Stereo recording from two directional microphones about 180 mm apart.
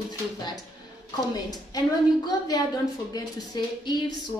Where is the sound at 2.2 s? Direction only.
20° left (ahead or behind).